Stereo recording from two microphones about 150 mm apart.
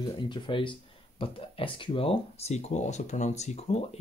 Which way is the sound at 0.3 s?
35° left (ahead or behind).